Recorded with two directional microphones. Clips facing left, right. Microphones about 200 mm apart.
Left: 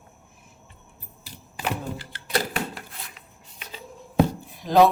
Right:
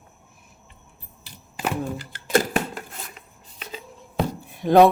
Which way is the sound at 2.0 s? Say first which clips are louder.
Right 6 dB; 45° right (ahead or behind).